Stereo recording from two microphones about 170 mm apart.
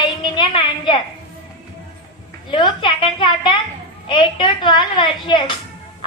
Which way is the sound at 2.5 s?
25° left (ahead or behind).